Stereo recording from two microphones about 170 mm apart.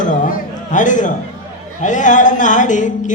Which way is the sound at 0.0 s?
50° left (ahead or behind).